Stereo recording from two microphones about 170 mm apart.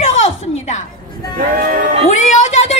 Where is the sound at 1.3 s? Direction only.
55° right (ahead or behind).